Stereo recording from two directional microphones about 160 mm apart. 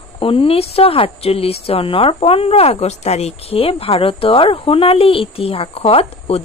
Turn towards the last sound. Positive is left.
turn(degrees=40)  # may be behind; listen again after turning